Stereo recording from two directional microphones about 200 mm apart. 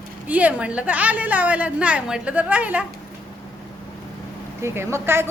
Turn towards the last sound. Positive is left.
turn(degrees=-10)  # may be behind; listen again after turning